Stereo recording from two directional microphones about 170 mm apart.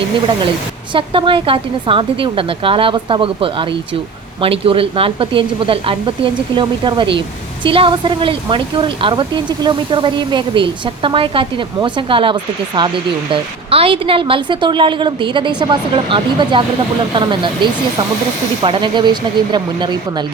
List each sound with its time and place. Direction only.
0.9 s speech: 30° right (ahead or behind)